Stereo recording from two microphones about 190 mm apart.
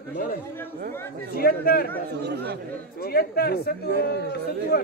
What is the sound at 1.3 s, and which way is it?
Speech, 50° left (ahead or behind).